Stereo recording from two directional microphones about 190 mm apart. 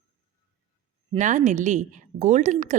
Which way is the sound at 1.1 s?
40° right (ahead or behind).